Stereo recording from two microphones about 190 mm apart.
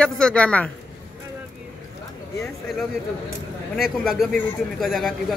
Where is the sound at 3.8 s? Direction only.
Centre (ahead or behind).